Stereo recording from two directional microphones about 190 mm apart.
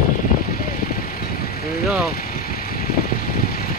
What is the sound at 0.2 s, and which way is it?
Vehicle, 50° left (ahead or behind).